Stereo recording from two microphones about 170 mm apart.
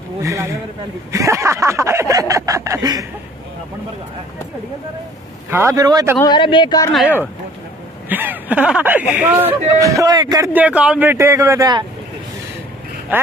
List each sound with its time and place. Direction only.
0.2 s speech: 20° right (ahead or behind)
5.5 s speech: 15° right (ahead or behind)
6.2 s speech: 30° left (ahead or behind)
8.1 s speech: 10° right (ahead or behind)
10.5 s speech: 10° right (ahead or behind)
13.1 s speech: 10° right (ahead or behind)